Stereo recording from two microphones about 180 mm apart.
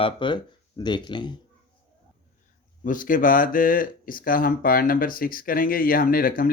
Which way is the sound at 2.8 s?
50° left (ahead or behind).